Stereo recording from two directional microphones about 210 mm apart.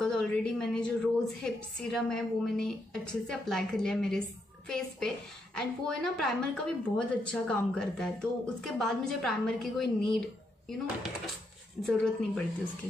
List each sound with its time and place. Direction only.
0.0 s a woman's voice: 5° left (ahead or behind)
11.8 s a woman's voice: 5° left (ahead or behind)